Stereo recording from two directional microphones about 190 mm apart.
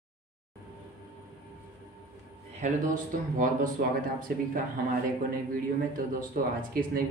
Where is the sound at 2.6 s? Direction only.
45° right (ahead or behind).